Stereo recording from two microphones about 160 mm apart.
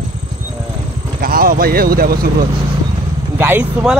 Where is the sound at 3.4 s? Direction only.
10° right (ahead or behind).